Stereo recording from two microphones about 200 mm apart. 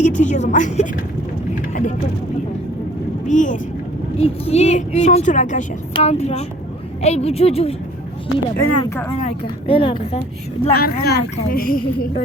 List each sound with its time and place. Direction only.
0.0 s speech: 35° left (ahead or behind)
3.2 s speech: 40° left (ahead or behind)
8.6 s speech: 75° left (ahead or behind)
9.2 s a woman's voice: 25° left (ahead or behind)
10.8 s a woman's voice: 50° left (ahead or behind)